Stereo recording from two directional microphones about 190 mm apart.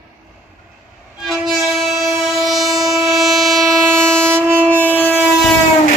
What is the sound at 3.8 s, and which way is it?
Train, 15° right (ahead or behind).